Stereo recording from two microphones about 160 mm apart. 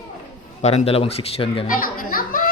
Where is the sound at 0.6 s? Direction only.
40° left (ahead or behind).